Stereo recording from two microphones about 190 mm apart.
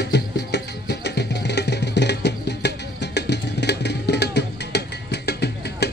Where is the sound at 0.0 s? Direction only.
60° left (ahead or behind).